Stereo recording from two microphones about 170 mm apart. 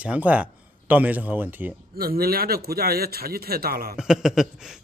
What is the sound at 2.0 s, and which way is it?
Speech, 60° right (ahead or behind).